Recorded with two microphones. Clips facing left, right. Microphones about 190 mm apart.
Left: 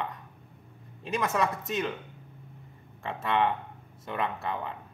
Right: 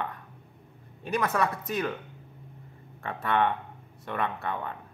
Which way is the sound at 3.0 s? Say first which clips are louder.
Right 1 dB; 25° left (ahead or behind).